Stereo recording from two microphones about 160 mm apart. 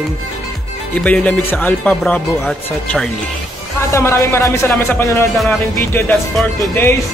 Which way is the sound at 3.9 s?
20° left (ahead or behind).